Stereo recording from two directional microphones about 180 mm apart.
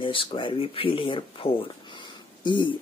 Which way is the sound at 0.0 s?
30° left (ahead or behind).